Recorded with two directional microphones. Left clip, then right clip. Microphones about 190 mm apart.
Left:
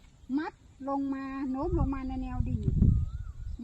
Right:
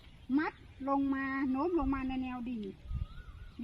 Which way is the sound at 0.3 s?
Centre (ahead or behind).